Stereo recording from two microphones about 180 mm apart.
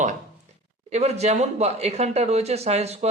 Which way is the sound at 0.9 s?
35° right (ahead or behind).